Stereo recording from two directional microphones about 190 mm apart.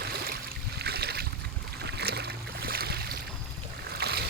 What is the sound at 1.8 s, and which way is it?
Boat, 60° right (ahead or behind).